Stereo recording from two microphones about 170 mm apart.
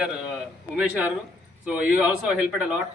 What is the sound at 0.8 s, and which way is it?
A man's voice, 10° right (ahead or behind).